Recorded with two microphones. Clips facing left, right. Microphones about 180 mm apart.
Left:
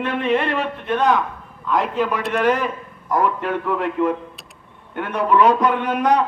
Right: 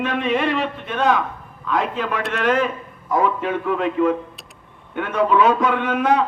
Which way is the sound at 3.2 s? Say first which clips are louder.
Even; 90° right.